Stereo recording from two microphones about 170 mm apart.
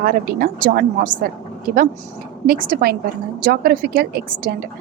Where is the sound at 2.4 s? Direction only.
60° right (ahead or behind).